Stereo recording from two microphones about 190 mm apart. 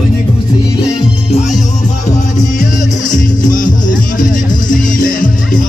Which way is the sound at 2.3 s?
40° left (ahead or behind).